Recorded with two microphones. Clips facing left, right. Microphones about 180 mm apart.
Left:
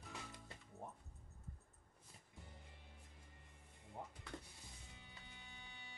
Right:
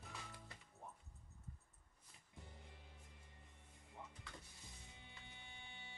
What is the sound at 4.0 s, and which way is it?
Music, 55° left (ahead or behind).